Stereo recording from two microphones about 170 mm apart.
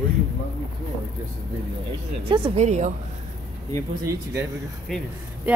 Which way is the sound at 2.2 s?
30° right (ahead or behind).